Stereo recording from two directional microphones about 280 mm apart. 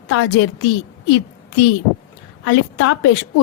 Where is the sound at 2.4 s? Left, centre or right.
Left.